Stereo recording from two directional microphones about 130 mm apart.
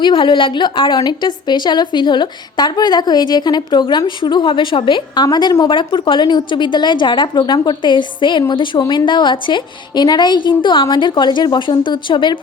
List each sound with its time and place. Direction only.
0.0 s a woman's voice: 40° left (ahead or behind)